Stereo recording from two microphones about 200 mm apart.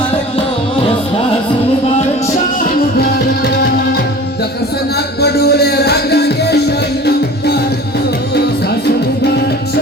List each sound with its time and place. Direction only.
4.9 s music: 55° left (ahead or behind)
9.2 s music: 55° left (ahead or behind)